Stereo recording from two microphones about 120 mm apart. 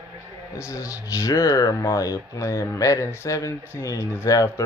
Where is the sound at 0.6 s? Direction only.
25° left (ahead or behind).